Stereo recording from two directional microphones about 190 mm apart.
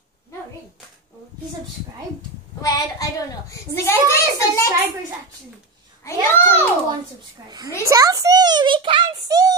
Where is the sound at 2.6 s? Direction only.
20° left (ahead or behind).